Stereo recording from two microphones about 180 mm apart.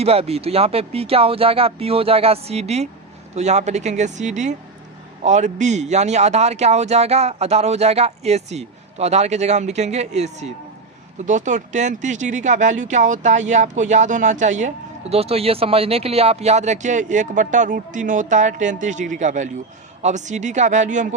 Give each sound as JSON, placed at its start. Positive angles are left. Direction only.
{"t": 0.0, "sound": "a man's voice", "side_deg": -35}